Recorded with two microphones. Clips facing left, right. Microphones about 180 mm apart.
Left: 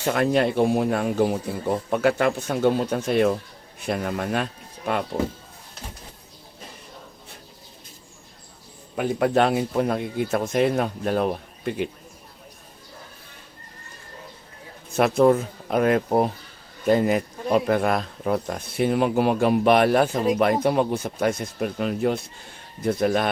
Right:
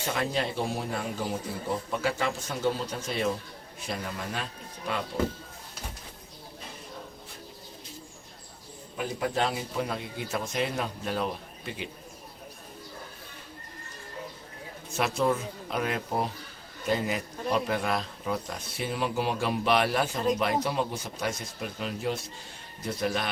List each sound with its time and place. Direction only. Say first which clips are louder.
0.0 s speech: left 9 dB; 55° left (ahead or behind)
9.0 s speech: left 9 dB; 65° left (ahead or behind)
14.9 s speech: left 9 dB; 55° left (ahead or behind)